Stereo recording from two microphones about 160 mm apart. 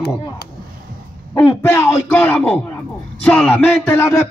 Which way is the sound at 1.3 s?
15° left (ahead or behind).